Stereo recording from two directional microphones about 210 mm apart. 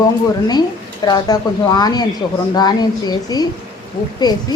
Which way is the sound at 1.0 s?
20° left (ahead or behind).